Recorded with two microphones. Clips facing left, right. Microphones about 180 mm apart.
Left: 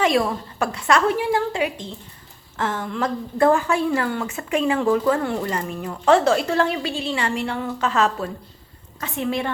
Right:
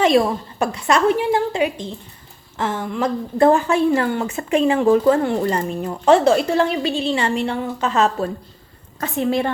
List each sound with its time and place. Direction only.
0.0 s a woman's voice: 25° right (ahead or behind)
9.0 s a woman's voice: 40° right (ahead or behind)